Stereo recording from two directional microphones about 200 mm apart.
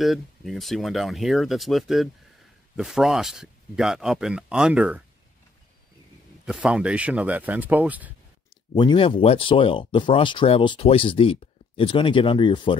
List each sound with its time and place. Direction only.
0.0 s speech: centre (ahead or behind)
6.4 s speech: 5° right (ahead or behind)
8.7 s speech: 25° left (ahead or behind)